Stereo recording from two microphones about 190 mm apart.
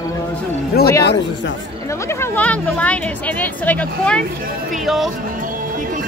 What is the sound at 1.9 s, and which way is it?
Speech, 15° left (ahead or behind).